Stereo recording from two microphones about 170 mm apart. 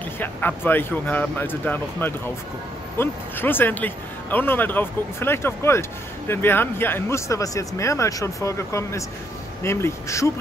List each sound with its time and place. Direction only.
0.2 s speech: 10° left (ahead or behind)